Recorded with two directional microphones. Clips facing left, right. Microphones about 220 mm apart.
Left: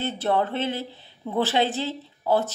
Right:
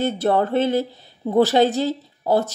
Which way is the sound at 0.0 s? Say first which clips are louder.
Right 5 dB; 40° right (ahead or behind).